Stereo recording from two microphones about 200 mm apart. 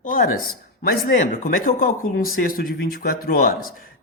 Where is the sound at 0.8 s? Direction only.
45° left (ahead or behind).